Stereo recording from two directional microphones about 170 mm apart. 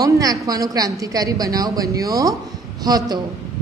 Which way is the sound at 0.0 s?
20° right (ahead or behind).